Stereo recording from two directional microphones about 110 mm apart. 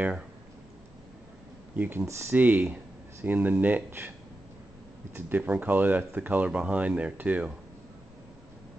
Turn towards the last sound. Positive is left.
turn(degrees=-15)  # may be behind; listen again after turning